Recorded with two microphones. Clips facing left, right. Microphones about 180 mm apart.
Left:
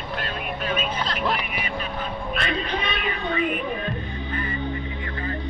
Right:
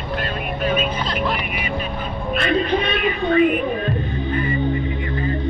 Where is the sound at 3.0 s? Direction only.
15° right (ahead or behind).